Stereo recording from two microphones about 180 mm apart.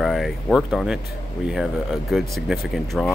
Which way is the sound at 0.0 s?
Centre (ahead or behind).